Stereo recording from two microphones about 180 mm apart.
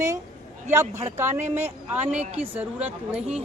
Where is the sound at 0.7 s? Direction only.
15° right (ahead or behind).